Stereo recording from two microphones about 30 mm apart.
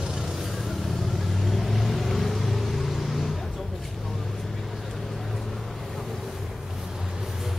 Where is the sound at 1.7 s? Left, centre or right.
Centre.